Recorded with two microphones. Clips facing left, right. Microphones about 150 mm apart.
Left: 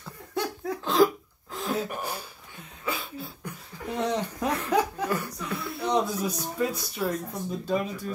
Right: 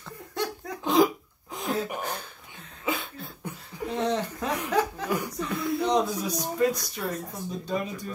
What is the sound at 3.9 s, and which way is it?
Speech, 10° left (ahead or behind).